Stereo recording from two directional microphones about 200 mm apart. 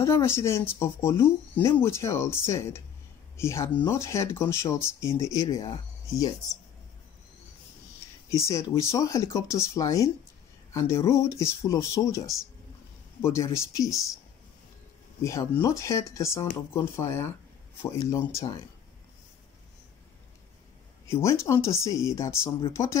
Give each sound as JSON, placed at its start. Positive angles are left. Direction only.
{"t": 0.0, "sound": "speech", "side_deg": 15}
{"t": 8.4, "sound": "speech", "side_deg": 15}
{"t": 15.2, "sound": "speech", "side_deg": 15}
{"t": 21.1, "sound": "speech", "side_deg": 15}